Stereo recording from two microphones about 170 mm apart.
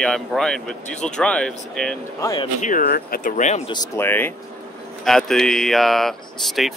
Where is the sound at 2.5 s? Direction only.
50° left (ahead or behind).